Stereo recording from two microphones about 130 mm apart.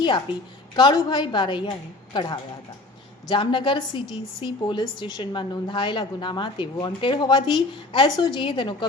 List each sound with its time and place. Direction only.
0.8 s a woman's voice: 35° left (ahead or behind)